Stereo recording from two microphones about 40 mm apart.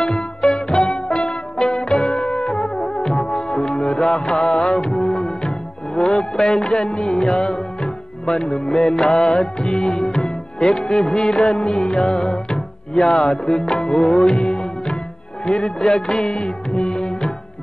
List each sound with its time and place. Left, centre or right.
0.0 s music: centre
15.4 s music of bollywood: left